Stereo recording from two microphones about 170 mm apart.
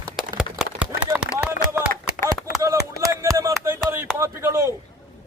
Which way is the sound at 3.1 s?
20° right (ahead or behind).